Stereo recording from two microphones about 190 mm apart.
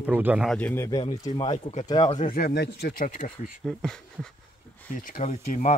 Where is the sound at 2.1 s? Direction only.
45° left (ahead or behind).